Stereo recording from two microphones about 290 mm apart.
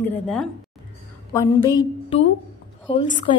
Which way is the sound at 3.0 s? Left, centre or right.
Centre.